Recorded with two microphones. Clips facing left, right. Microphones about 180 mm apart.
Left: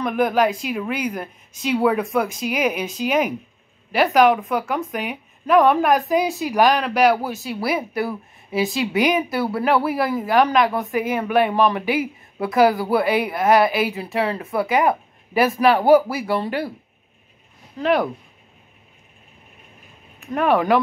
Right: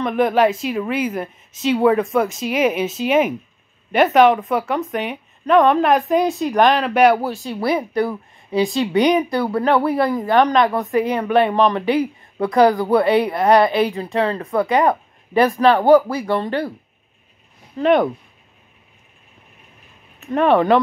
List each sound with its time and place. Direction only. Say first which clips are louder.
0.0 s a woman's voice: right 3 dB; centre (ahead or behind)
17.7 s speech: right 4 dB; 5° left (ahead or behind)
20.2 s speech: right 3 dB; 5° left (ahead or behind)